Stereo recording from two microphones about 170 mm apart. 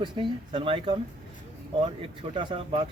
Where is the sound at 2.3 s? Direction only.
30° right (ahead or behind).